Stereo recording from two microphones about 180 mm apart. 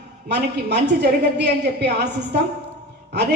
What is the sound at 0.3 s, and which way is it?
Speech, 70° right (ahead or behind).